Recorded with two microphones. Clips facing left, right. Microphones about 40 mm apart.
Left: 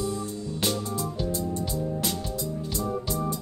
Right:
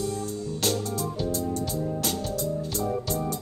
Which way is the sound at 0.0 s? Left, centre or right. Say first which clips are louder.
Even; left.